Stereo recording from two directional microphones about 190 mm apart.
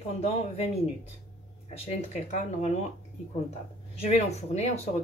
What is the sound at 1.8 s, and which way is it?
Speech, 35° left (ahead or behind).